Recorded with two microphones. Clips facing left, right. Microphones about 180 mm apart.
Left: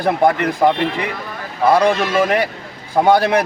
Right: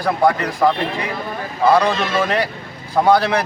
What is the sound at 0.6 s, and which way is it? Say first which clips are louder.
Speech: left 1 dB; 15° left (ahead or behind).